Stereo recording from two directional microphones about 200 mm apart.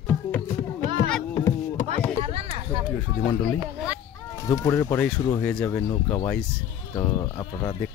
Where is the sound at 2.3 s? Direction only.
30° right (ahead or behind).